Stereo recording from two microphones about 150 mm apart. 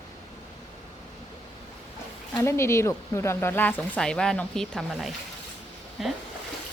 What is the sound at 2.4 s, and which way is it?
Speech, 15° left (ahead or behind).